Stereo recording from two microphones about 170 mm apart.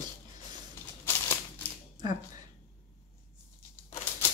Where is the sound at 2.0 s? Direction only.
25° right (ahead or behind).